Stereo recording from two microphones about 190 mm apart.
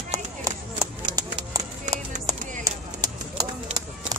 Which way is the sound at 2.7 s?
15° right (ahead or behind).